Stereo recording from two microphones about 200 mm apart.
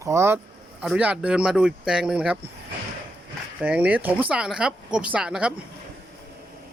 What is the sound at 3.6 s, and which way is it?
Speech, 5° right (ahead or behind).